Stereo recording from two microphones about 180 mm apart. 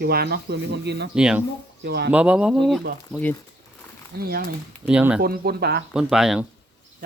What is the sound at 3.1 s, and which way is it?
Speech, 10° left (ahead or behind).